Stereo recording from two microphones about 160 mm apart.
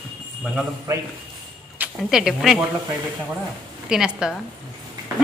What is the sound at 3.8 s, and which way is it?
Speech, 5° right (ahead or behind).